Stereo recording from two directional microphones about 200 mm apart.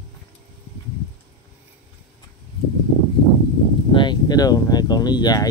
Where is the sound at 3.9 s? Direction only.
20° left (ahead or behind).